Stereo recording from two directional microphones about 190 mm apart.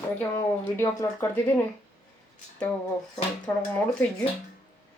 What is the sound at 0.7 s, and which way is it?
Speech, 15° left (ahead or behind).